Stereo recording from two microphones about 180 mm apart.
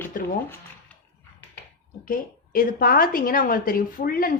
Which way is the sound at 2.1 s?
50° left (ahead or behind).